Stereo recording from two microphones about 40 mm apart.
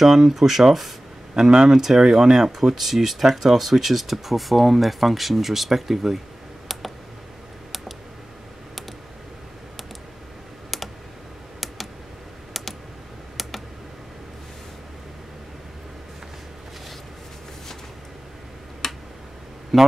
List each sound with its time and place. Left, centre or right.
0.0 s speech: centre
13.4 s computer keyboard: centre
18.8 s tick-tock: centre
19.7 s speech: centre